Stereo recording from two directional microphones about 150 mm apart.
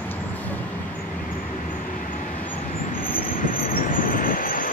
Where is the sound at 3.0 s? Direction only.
65° left (ahead or behind).